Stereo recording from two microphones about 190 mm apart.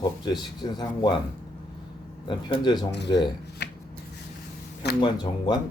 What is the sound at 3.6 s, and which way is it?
Chopping, 60° left (ahead or behind).